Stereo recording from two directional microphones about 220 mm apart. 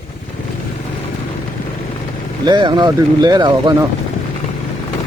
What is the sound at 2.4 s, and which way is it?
Speech, 20° right (ahead or behind).